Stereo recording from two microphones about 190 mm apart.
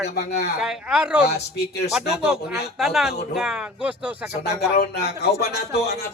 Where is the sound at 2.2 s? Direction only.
Centre (ahead or behind).